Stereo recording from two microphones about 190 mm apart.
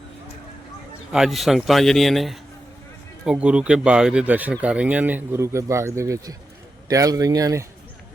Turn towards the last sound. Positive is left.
turn(degrees=-15)  # may be behind; listen again after turning